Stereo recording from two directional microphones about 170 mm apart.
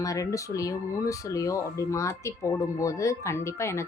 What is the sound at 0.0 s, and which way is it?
Speech, 20° left (ahead or behind).